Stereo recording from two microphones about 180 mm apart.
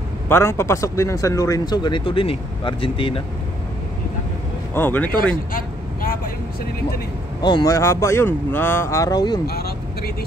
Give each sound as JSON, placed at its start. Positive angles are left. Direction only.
{"t": 0.3, "sound": "speech", "side_deg": 15}
{"t": 4.7, "sound": "speech", "side_deg": 10}
{"t": 5.5, "sound": "vehicle", "side_deg": 50}
{"t": 7.4, "sound": "speech", "side_deg": 20}
{"t": 9.5, "sound": "speech", "side_deg": 60}